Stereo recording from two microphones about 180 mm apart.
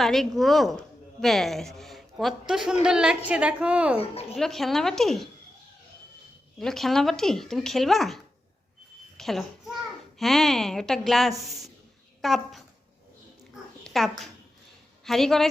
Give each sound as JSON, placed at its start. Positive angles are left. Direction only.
{"t": 0.0, "sound": "a woman's voice", "side_deg": 0}
{"t": 4.0, "sound": "a woman's voice", "side_deg": 35}
{"t": 4.4, "sound": "speech", "side_deg": 0}
{"t": 6.6, "sound": "a child's voice", "side_deg": 0}
{"t": 13.8, "sound": "speech", "side_deg": 0}